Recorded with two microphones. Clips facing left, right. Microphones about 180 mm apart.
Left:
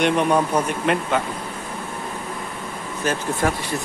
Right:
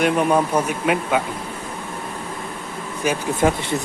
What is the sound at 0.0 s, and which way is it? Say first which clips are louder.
Speech: right 1 dB; 5° right (ahead or behind).